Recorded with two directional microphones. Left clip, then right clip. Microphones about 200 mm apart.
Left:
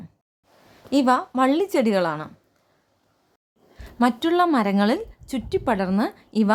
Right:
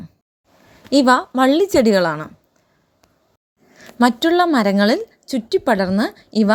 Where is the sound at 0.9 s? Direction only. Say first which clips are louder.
Right 6 dB; 20° right (ahead or behind).